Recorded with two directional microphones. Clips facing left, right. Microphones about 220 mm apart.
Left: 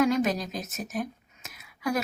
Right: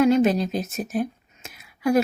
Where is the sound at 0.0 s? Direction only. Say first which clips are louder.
Right 6 dB; 25° right (ahead or behind).